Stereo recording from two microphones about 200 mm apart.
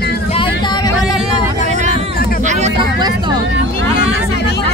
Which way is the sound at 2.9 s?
20° right (ahead or behind).